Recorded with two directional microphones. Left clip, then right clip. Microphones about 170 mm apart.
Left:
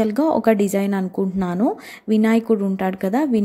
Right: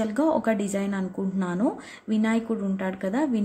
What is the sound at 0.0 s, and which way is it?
A woman's voice, 35° left (ahead or behind).